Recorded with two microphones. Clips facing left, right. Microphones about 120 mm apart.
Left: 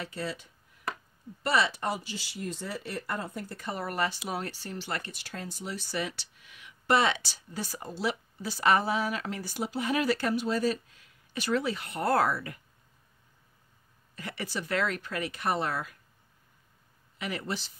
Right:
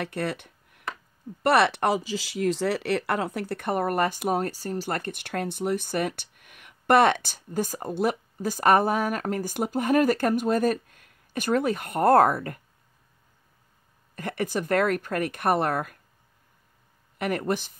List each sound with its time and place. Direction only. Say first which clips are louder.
0.0 s a sound: right 6 dB; 60° right (ahead or behind)
1.4 s speech: right 7 dB; 60° right (ahead or behind)
14.1 s speech: right 8 dB; 50° right (ahead or behind)
17.2 s speech: right 8 dB; 50° right (ahead or behind)